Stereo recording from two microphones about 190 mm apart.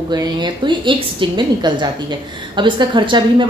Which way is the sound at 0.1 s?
20° right (ahead or behind).